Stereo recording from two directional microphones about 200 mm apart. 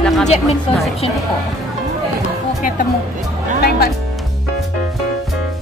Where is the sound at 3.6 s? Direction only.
50° left (ahead or behind).